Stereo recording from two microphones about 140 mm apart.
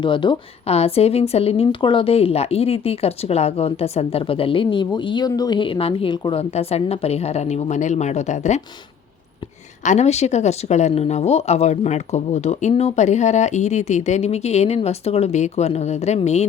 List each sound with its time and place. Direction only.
0.0 s a woman's voice: 35° left (ahead or behind)
0.7 s a woman's voice: 45° left (ahead or behind)
9.8 s a woman's voice: 55° left (ahead or behind)